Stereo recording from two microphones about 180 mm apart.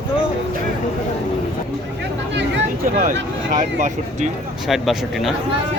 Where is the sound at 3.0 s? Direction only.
45° right (ahead or behind).